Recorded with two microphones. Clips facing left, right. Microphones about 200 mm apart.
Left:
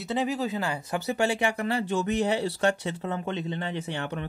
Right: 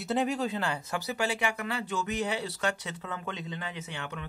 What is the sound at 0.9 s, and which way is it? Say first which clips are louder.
Speech: left 8 dB; 25° left (ahead or behind).